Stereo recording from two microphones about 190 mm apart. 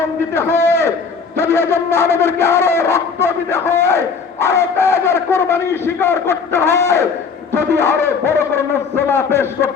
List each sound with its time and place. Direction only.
0.3 s a man's voice: 15° left (ahead or behind)